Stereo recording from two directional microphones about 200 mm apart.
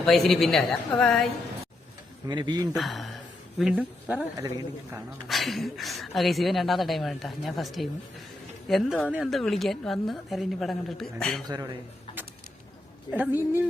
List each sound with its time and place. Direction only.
0.0 s speech: centre (ahead or behind)
2.2 s speech: 20° right (ahead or behind)
2.7 s a man's voice: centre (ahead or behind)
5.3 s speech: centre (ahead or behind)
11.4 s speech: 20° right (ahead or behind)
13.1 s a man's voice: 10° right (ahead or behind)